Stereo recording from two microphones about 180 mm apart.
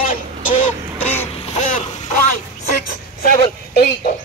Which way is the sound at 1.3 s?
35° left (ahead or behind).